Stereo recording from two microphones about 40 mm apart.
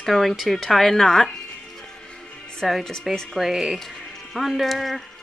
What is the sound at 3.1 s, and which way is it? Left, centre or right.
Speech, centre.